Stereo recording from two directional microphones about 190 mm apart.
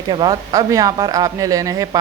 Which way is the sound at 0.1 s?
20° right (ahead or behind).